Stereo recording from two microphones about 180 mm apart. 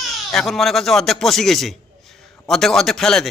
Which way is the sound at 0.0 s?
Centre (ahead or behind).